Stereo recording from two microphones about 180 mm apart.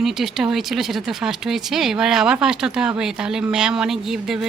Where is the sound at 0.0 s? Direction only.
Centre (ahead or behind).